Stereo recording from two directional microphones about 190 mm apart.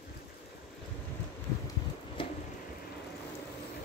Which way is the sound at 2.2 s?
25° left (ahead or behind).